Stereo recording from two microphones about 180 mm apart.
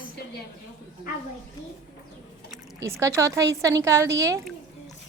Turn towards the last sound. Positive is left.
turn(degrees=-15)  # may be behind; listen again after turning